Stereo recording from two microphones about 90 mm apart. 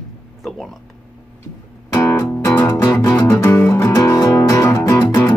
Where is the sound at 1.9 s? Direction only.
30° left (ahead or behind).